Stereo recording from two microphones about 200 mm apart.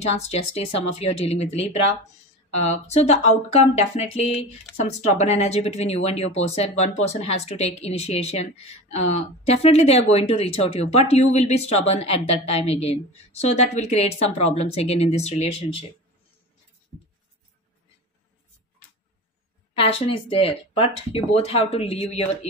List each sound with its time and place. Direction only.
0.1 s speech: 30° left (ahead or behind)
19.8 s speech: 30° left (ahead or behind)